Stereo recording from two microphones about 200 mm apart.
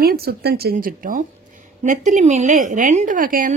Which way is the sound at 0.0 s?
50° right (ahead or behind).